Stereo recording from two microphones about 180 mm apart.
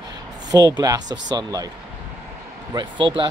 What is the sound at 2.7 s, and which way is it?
Speech, 25° right (ahead or behind).